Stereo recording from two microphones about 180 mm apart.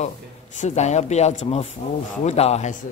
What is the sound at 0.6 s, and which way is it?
Speech, 40° left (ahead or behind).